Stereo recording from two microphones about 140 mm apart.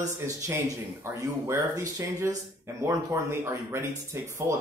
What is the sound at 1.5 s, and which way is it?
Speech, 20° right (ahead or behind).